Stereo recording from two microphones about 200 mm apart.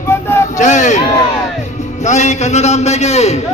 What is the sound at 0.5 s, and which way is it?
Crowd, 35° left (ahead or behind).